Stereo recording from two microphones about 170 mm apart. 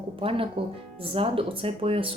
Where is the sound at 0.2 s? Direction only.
30° right (ahead or behind).